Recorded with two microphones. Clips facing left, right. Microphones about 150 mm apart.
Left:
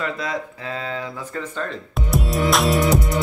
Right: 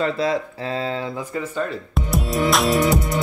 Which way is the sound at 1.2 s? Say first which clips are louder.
Right 3 dB; 10° right (ahead or behind).